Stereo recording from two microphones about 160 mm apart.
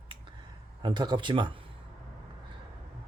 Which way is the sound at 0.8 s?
30° right (ahead or behind).